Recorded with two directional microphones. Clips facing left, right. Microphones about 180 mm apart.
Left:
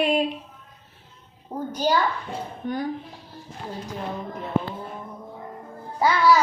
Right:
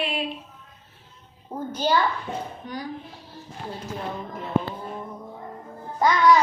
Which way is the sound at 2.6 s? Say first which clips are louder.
Left 6 dB; 50° left (ahead or behind).